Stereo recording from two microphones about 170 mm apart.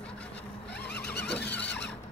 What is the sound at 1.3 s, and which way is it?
Squeal, 90° left.